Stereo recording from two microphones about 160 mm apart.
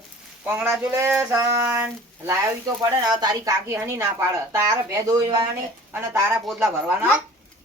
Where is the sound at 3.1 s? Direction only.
25° right (ahead or behind).